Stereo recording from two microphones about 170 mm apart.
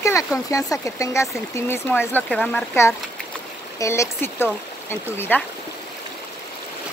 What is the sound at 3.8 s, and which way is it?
Speech, 15° left (ahead or behind).